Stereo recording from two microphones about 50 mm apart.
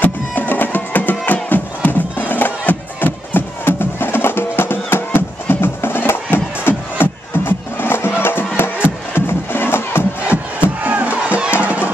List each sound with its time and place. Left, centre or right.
0.0 s music: left
10.6 s music: right